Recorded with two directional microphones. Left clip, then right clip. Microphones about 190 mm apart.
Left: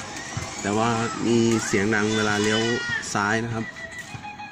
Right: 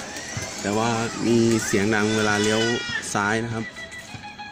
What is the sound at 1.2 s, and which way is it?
Speech, 15° right (ahead or behind).